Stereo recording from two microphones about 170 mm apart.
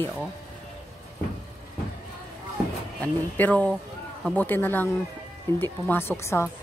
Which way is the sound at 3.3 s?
10° left (ahead or behind).